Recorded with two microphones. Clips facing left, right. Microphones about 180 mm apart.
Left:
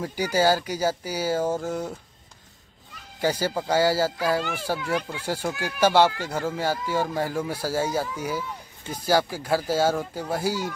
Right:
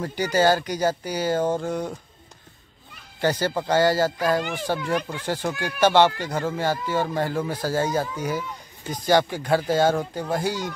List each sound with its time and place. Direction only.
0.0 s speech: 10° left (ahead or behind)
3.2 s speech: 10° left (ahead or behind)